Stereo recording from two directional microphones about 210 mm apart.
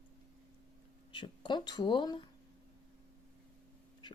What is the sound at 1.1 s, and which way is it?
Speech, 20° left (ahead or behind).